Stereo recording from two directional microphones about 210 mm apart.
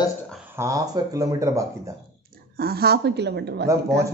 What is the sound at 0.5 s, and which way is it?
Speech, 15° right (ahead or behind).